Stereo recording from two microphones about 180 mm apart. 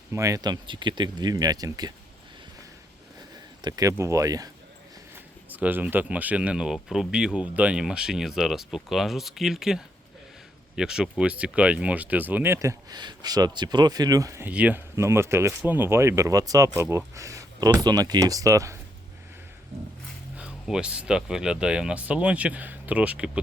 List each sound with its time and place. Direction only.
0.1 s speech: 15° right (ahead or behind)
3.6 s speech: 20° right (ahead or behind)
5.5 s speech: 10° right (ahead or behind)
20.3 s speech: 5° right (ahead or behind)